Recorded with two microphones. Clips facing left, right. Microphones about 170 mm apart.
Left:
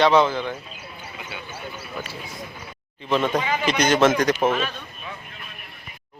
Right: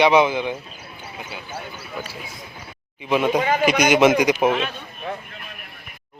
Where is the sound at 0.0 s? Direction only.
15° right (ahead or behind).